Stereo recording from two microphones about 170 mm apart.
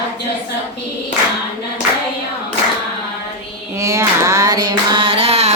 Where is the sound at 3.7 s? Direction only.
20° right (ahead or behind); by 5.5 s 35° right (ahead or behind).